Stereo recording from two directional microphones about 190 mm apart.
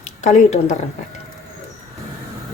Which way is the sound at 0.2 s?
40° left (ahead or behind).